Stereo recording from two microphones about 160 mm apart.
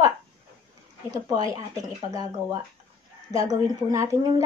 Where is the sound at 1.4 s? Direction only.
20° right (ahead or behind).